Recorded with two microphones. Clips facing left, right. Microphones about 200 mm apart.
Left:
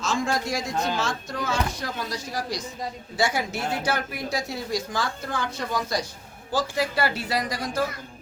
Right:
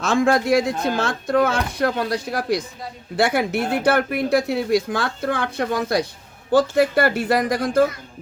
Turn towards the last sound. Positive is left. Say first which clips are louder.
# right 9 dB
turn(degrees=-55)  # may be behind; listen again after turning